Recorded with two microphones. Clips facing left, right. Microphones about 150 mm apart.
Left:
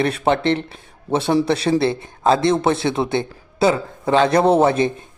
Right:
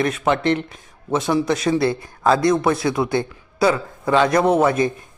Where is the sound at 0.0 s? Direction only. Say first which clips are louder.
Left 1 dB; 30° left (ahead or behind).